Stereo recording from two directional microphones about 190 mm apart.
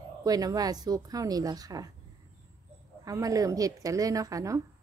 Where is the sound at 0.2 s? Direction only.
20° right (ahead or behind).